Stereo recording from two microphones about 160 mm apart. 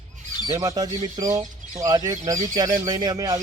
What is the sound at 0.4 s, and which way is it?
Speech, 25° right (ahead or behind).